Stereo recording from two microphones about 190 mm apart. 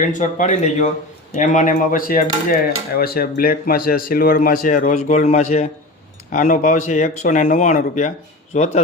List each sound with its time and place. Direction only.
0.1 s speech: 40° left (ahead or behind)
1.3 s dishes: 40° left (ahead or behind)
6.3 s speech: 45° left (ahead or behind)